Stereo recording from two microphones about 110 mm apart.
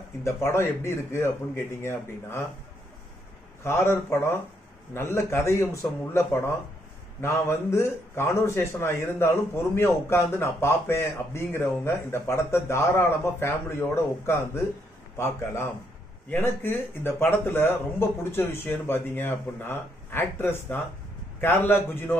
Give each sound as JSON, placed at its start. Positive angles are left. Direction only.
{"t": 0.2, "sound": "a man's voice", "side_deg": 25}
{"t": 3.6, "sound": "a man's voice", "side_deg": 25}